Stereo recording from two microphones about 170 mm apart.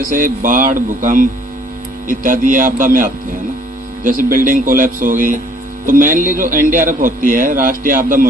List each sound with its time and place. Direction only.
0.0 s a man's voice: 55° right (ahead or behind)